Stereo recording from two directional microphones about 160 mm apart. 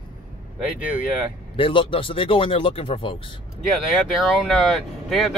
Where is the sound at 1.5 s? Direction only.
35° left (ahead or behind).